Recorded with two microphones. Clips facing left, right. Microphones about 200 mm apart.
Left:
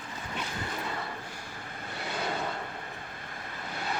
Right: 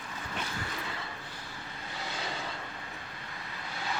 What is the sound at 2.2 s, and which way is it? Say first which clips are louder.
Vehicle: left 8 dB; 60° left (ahead or behind).